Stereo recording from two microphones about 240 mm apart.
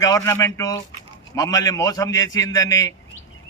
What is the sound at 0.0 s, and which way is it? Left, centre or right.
A man's voice, centre.